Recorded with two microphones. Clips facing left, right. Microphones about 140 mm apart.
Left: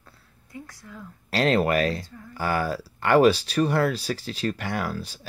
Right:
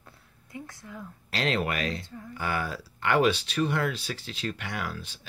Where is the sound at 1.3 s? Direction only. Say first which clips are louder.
Left 7 dB; 40° left (ahead or behind).